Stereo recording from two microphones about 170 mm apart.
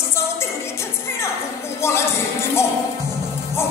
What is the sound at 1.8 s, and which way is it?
Music, 15° left (ahead or behind).